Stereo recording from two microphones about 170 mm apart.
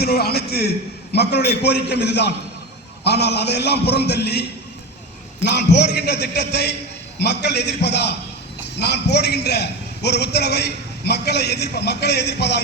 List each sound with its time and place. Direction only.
0.0 s a man's voice: 65° left (ahead or behind)
5.4 s a man's voice: 90° left